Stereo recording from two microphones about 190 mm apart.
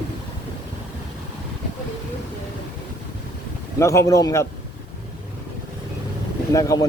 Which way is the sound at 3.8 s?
15° left (ahead or behind).